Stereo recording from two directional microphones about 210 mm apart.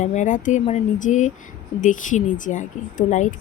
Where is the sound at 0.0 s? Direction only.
35° left (ahead or behind).